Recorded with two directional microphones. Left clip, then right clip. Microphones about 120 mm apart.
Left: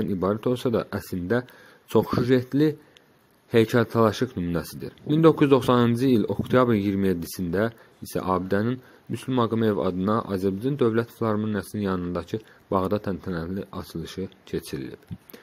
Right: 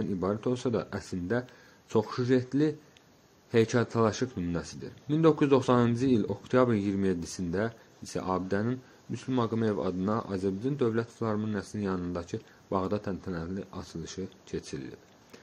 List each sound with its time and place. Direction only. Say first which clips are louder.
0.2 s speech: left 6 dB; 40° left (ahead or behind)